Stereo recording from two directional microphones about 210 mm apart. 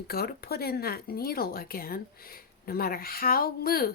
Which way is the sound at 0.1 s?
45° left (ahead or behind).